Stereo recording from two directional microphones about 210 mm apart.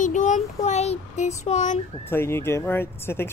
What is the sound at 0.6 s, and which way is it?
Speech, 30° left (ahead or behind).